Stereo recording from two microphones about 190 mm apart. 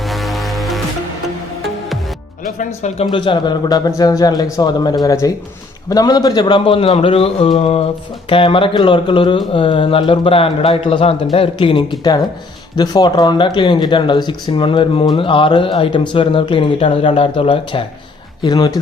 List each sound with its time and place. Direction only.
0.0 s music: centre (ahead or behind)
2.6 s speech: 35° left (ahead or behind); by 18.8 s 20° left (ahead or behind)